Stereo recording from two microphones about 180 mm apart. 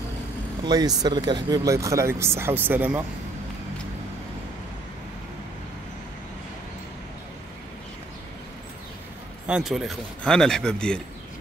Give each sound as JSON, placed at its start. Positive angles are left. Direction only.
{"t": 0.7, "sound": "speech", "side_deg": -20}
{"t": 9.5, "sound": "a man's voice", "side_deg": 0}